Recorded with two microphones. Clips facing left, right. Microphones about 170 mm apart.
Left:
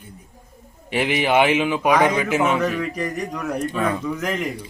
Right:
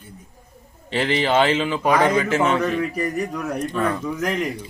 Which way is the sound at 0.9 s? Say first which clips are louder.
Left 1 dB; 15° left (ahead or behind).